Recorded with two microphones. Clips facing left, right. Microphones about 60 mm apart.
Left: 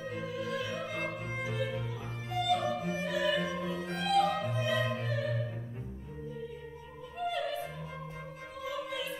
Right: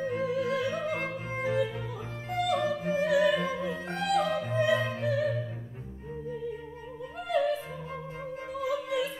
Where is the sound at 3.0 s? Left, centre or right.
Right.